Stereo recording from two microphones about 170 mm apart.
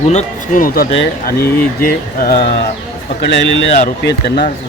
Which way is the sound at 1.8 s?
60° left (ahead or behind).